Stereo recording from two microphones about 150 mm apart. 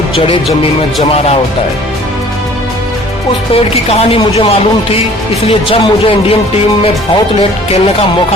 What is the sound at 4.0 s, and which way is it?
Speech, 40° left (ahead or behind).